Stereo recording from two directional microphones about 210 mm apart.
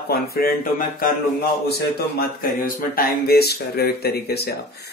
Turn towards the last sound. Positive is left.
turn(degrees=50)  # may be behind; listen again after turning